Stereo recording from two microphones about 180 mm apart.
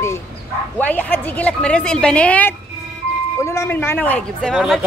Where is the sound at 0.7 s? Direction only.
10° left (ahead or behind).